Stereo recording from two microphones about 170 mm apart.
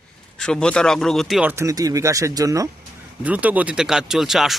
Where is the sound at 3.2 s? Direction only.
10° right (ahead or behind).